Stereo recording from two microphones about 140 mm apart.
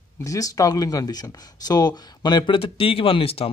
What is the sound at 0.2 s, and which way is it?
Speech, 25° left (ahead or behind).